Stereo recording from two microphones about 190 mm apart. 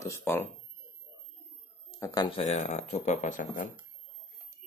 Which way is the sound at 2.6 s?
40° left (ahead or behind).